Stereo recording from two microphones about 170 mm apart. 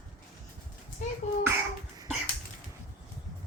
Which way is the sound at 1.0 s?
50° left (ahead or behind).